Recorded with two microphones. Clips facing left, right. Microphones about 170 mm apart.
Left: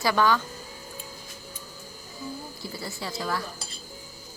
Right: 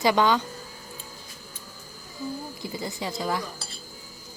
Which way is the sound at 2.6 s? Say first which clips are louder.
Right 3 dB; 20° right (ahead or behind).